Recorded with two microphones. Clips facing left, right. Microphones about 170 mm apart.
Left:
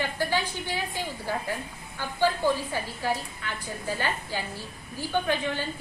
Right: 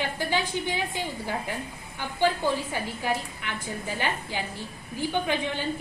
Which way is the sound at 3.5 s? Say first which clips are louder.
Even; 15° right (ahead or behind).